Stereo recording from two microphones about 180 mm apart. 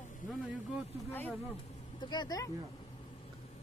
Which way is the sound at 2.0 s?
25° left (ahead or behind).